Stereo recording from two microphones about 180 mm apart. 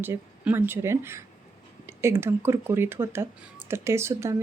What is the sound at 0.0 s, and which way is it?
Speech, 10° right (ahead or behind).